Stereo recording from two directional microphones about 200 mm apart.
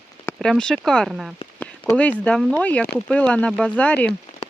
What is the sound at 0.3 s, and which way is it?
Speech, 5° left (ahead or behind).